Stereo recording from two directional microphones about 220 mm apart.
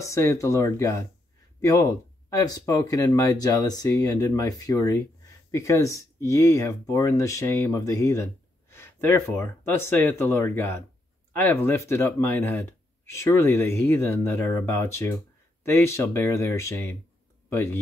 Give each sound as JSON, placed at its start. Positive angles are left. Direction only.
{"t": 0.0, "sound": "speech", "side_deg": 15}